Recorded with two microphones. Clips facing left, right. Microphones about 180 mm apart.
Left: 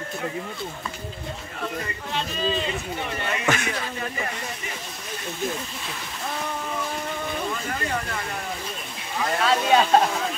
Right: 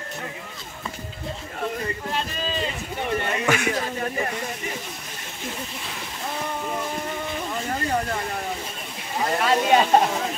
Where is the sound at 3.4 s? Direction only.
10° right (ahead or behind).